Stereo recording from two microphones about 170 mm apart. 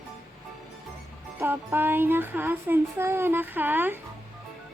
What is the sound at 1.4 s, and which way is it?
Speech, 10° right (ahead or behind).